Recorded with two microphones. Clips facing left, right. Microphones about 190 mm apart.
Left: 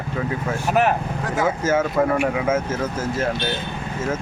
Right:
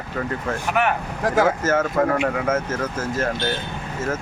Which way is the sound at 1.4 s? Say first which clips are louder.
Even; 10° left (ahead or behind).